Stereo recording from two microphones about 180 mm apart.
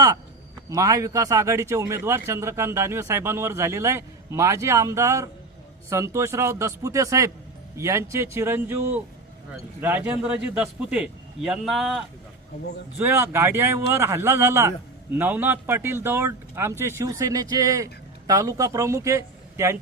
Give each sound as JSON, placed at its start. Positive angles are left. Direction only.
{"t": 0.7, "sound": "speech", "side_deg": -20}
{"t": 13.0, "sound": "speech", "side_deg": -15}